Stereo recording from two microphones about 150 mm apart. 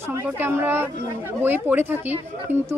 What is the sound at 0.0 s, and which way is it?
Speech, 15° right (ahead or behind).